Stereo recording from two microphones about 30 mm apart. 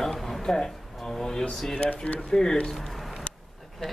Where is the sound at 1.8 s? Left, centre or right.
Left.